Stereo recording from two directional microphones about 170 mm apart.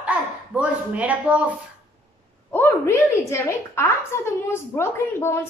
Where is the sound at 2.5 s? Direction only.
15° left (ahead or behind).